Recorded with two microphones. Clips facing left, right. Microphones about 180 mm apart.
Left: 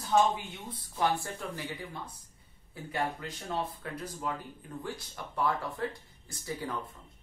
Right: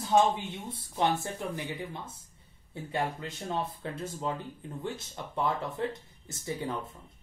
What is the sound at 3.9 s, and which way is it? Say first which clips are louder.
Speech: right 2 dB; 25° right (ahead or behind).